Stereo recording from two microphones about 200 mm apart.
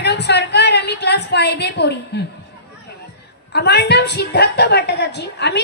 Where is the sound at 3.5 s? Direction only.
55° left (ahead or behind).